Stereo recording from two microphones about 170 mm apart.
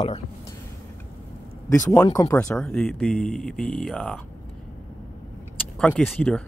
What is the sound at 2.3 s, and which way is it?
Speech, 10° left (ahead or behind).